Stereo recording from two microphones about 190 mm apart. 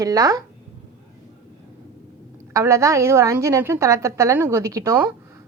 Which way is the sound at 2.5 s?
15° right (ahead or behind).